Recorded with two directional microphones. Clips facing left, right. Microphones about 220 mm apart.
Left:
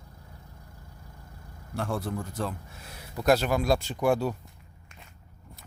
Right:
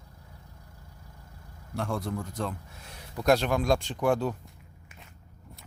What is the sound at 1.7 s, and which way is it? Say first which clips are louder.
Speech: even; 5° left (ahead or behind).